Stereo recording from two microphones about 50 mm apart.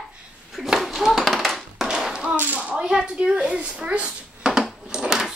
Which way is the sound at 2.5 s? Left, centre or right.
Right.